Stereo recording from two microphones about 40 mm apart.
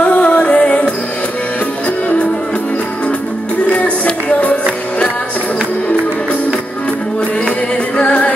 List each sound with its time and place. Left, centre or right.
0.0 s music: left
3.7 s music: left
8.0 s music: left